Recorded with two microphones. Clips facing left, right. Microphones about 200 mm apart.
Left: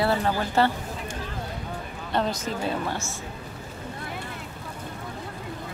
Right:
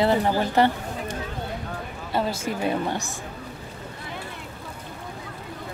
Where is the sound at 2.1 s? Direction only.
5° right (ahead or behind).